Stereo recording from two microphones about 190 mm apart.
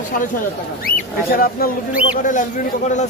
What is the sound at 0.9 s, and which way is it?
A man's voice, 50° left (ahead or behind).